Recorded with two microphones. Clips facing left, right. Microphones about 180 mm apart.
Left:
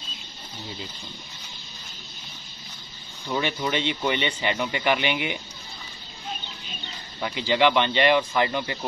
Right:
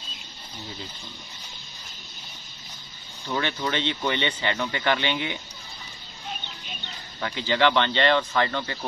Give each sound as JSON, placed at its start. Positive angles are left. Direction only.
{"t": 3.3, "sound": "speech", "side_deg": 10}
{"t": 7.2, "sound": "speech", "side_deg": 15}